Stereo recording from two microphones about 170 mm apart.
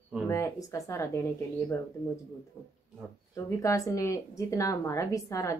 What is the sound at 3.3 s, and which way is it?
Speech, 20° left (ahead or behind).